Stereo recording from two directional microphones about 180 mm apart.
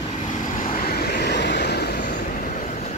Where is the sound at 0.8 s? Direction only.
60° left (ahead or behind).